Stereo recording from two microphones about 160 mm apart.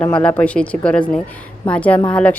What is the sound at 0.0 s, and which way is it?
A woman's voice, 10° left (ahead or behind).